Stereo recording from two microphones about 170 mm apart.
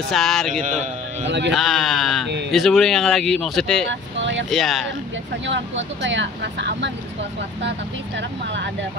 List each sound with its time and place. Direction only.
0.1 s speech: centre (ahead or behind)
0.5 s a man's voice: 45° right (ahead or behind)
1.5 s speech: centre (ahead or behind)
4.2 s vehicle: 90° right
4.5 s speech: centre (ahead or behind)
5.5 s speech: 90° right